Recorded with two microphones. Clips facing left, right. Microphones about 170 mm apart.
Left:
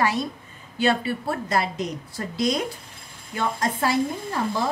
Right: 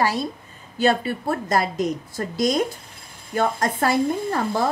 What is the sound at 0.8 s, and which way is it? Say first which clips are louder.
A woman's voice: right 2 dB; 45° right (ahead or behind).